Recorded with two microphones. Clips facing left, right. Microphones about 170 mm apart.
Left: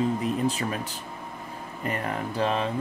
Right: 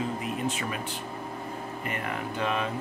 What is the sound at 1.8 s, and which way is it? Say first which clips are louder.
Speech: left 5 dB; 35° left (ahead or behind).